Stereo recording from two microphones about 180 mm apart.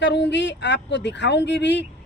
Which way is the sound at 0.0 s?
75° left (ahead or behind).